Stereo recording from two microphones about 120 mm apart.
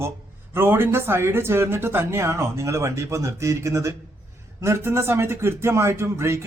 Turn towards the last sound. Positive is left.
turn(degrees=-20)  # may be behind; listen again after turning